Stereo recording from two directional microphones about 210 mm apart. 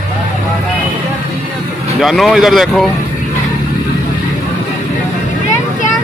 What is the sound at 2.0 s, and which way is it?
Speech, centre (ahead or behind).